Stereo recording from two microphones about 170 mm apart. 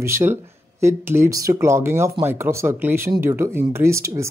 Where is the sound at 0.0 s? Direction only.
15° right (ahead or behind).